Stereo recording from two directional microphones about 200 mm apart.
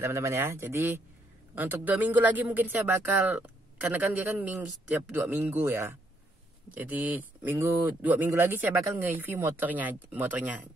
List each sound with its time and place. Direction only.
0.0 s speech: 10° right (ahead or behind)